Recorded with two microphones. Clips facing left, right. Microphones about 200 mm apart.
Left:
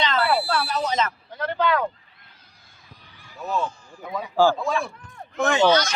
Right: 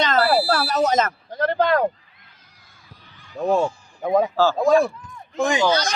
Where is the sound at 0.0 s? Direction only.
40° right (ahead or behind).